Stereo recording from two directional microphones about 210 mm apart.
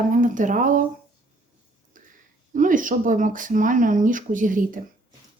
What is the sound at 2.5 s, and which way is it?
Speech, 40° right (ahead or behind).